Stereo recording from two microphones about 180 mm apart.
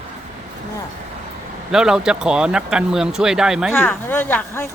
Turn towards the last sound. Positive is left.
turn(degrees=10)  # may be behind; listen again after turning